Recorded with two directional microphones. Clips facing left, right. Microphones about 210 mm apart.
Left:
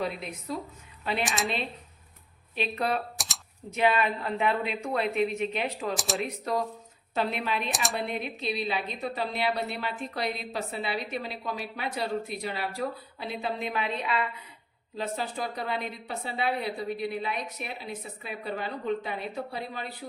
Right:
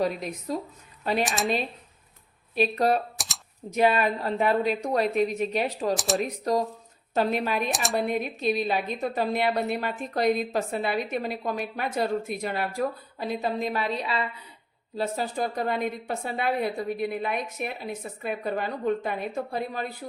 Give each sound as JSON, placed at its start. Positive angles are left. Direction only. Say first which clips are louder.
{"t": 0.0, "sound": "a woman's voice", "louder": "right 5 dB", "side_deg": -40}
{"t": 1.2, "sound": "speech", "louder": "right 2 dB", "side_deg": 0}
{"t": 2.6, "sound": "a woman's voice", "louder": "right 6 dB", "side_deg": -40}
{"t": 3.2, "sound": "typing", "louder": "even", "side_deg": 0}
{"t": 3.7, "sound": "a woman's voice", "louder": "right 3 dB", "side_deg": -40}
{"t": 7.7, "sound": "speech", "louder": "right 3 dB", "side_deg": 0}
{"t": 7.9, "sound": "a woman's voice", "louder": "right 6 dB", "side_deg": -45}